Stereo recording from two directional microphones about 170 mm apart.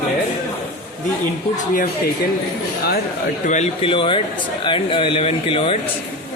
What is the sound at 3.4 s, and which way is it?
Speech, 40° left (ahead or behind).